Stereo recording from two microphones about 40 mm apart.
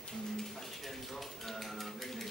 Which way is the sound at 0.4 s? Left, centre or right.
Centre.